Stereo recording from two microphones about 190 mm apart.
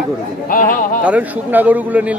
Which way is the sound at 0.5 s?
45° left (ahead or behind).